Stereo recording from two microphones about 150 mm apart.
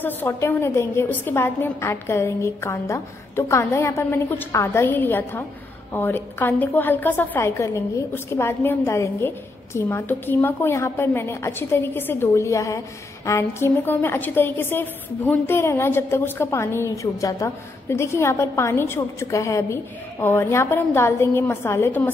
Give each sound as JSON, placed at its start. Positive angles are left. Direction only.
{"t": 0.0, "sound": "a woman's voice", "side_deg": 15}